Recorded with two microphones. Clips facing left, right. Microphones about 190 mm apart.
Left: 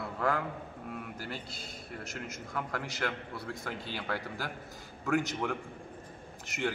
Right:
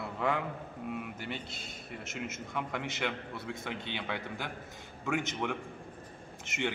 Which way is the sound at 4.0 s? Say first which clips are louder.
Left 1 dB; 5° left (ahead or behind).